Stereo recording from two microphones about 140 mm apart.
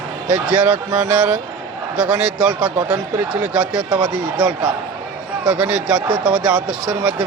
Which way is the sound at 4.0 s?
Centre (ahead or behind).